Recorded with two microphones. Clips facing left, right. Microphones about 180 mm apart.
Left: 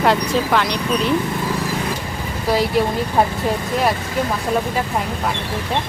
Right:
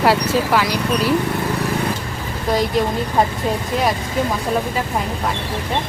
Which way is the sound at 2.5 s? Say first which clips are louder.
Left 1 dB; 5° left (ahead or behind).